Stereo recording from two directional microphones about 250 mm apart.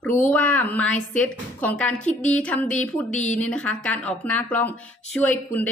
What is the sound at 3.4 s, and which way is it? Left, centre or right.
A woman's voice, centre.